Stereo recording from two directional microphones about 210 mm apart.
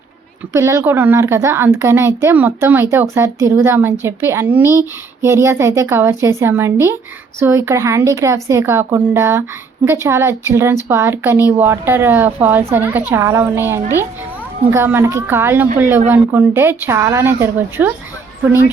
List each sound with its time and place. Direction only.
0.5 s a woman's voice: 15° right (ahead or behind)